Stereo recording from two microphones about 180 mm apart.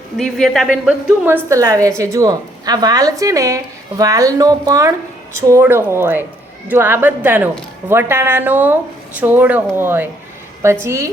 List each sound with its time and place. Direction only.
0.2 s a woman's voice: centre (ahead or behind)
1.2 s speech: 15° right (ahead or behind)